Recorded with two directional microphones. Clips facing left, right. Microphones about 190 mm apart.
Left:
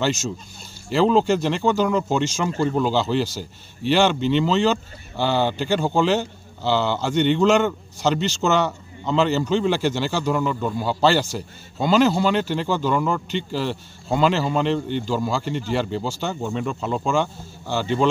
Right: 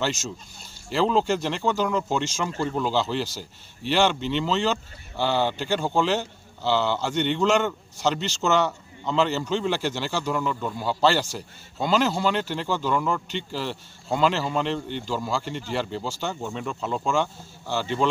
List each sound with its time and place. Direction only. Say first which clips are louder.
0.9 s a man's voice: left 5 dB; 10° left (ahead or behind)
2.5 s speech: left 6 dB; 25° left (ahead or behind)
2.9 s a man's voice: left 4 dB; 10° left (ahead or behind)